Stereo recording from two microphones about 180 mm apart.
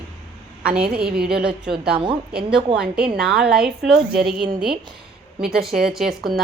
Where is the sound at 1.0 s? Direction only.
60° right (ahead or behind).